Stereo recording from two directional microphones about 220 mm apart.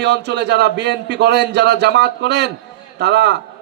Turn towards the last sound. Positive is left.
turn(degrees=-50)  # may be behind; listen again after turning